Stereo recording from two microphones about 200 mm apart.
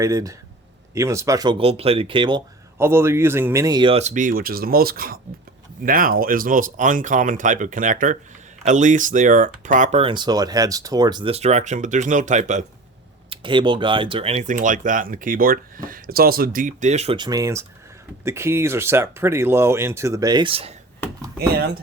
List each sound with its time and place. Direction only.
0.0 s speech: 15° right (ahead or behind)
2.7 s speech: 10° right (ahead or behind); by 12.6 s 35° right (ahead or behind)
13.3 s speech: 25° right (ahead or behind)
21.3 s speech: 50° right (ahead or behind)